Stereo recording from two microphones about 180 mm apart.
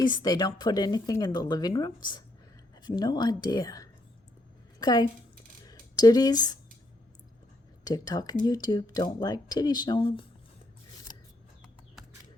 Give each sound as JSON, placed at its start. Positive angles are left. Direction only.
{"t": 0.0, "sound": "a woman's voice", "side_deg": 25}
{"t": 7.9, "sound": "speech", "side_deg": 20}